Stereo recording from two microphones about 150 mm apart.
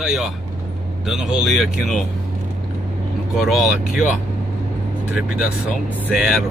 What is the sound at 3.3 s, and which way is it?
Speech, centre (ahead or behind).